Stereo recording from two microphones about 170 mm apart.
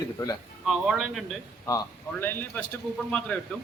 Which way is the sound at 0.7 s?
5° right (ahead or behind).